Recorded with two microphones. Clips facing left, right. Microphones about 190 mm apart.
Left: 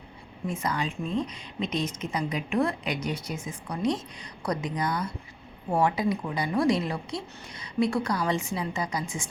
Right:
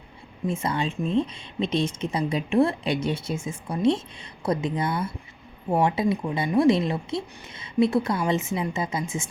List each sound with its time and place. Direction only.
0.4 s speech: 25° right (ahead or behind)